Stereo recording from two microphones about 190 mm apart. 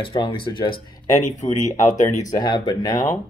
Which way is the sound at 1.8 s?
40° left (ahead or behind).